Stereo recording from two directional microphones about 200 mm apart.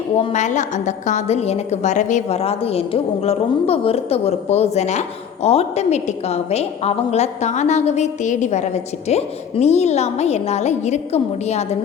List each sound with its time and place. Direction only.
0.2 s a woman's voice: 30° left (ahead or behind)